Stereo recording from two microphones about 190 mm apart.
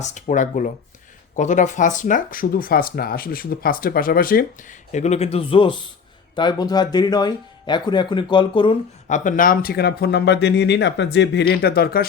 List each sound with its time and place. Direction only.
0.0 s a man's voice: 40° left (ahead or behind)
4.9 s a man's voice: 35° left (ahead or behind)
9.0 s speech: 40° left (ahead or behind)